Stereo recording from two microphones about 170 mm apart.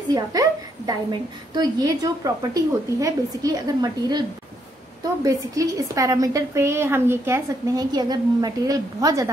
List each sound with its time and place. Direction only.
0.1 s a woman's voice: 20° right (ahead or behind)
5.2 s a woman's voice: 20° right (ahead or behind)